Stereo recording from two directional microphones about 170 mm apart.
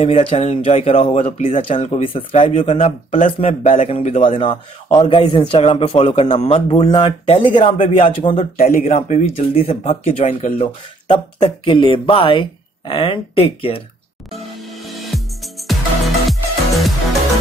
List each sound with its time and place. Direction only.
0.0 s speech: 35° left (ahead or behind)
14.6 s music: centre (ahead or behind)